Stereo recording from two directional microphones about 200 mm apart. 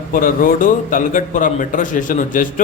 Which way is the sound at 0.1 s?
45° left (ahead or behind).